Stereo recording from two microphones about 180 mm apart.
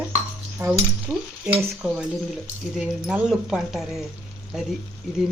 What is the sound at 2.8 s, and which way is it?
Speech, 5° right (ahead or behind).